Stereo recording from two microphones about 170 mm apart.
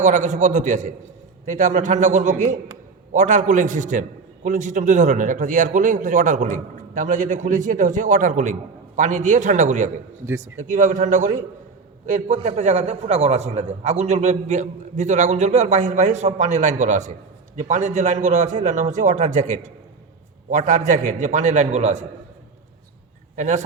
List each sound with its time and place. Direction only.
0.0 s a man's voice: 45° right (ahead or behind)
10.2 s speech: 20° right (ahead or behind)
10.6 s a man's voice: 45° right (ahead or behind)
23.3 s speech: 45° right (ahead or behind)